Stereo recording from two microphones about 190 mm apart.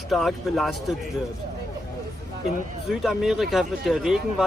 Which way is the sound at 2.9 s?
Centre (ahead or behind).